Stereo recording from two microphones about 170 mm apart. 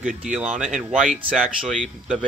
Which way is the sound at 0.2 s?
5° right (ahead or behind).